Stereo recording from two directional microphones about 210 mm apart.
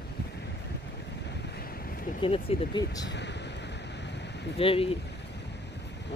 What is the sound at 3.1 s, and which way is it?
Speech, 55° left (ahead or behind).